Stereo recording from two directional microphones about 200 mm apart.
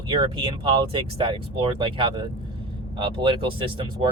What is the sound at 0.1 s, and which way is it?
Speech, 25° right (ahead or behind).